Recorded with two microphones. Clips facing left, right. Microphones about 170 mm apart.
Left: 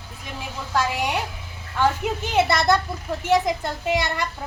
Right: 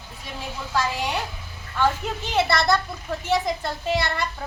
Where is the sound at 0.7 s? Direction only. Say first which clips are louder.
Left 2 dB; 10° left (ahead or behind).